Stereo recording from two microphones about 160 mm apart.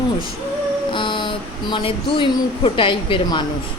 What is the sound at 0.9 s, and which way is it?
Speech, 30° left (ahead or behind).